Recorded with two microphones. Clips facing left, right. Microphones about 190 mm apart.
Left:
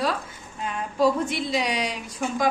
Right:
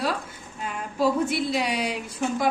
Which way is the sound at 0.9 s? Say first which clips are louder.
Left 1 dB; 5° right (ahead or behind).